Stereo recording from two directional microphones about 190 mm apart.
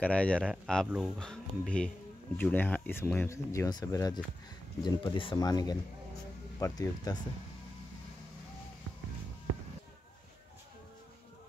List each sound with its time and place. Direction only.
0.0 s speech: 5° left (ahead or behind)